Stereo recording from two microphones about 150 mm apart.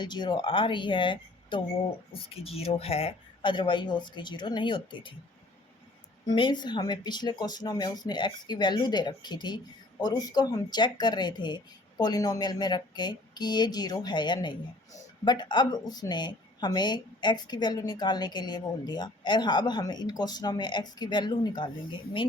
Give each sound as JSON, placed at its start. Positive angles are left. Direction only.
{"t": 0.0, "sound": "speech", "side_deg": 30}
{"t": 6.2, "sound": "speech", "side_deg": 30}